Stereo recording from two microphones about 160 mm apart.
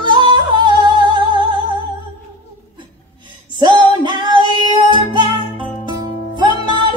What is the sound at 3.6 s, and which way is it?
Music, 30° right (ahead or behind).